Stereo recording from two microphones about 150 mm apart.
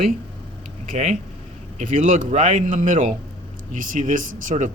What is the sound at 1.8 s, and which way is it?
Speech, 60° right (ahead or behind).